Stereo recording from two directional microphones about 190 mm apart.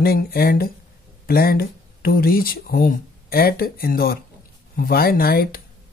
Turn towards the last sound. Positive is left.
turn(degrees=50)  # may be behind; listen again after turning